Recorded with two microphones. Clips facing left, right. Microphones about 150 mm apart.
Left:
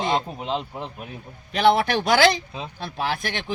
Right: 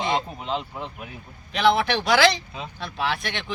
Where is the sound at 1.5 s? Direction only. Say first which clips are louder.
Left 2 dB; 45° left (ahead or behind).